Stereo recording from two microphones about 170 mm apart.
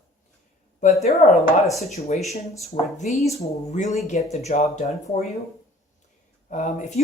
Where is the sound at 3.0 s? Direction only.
40° left (ahead or behind).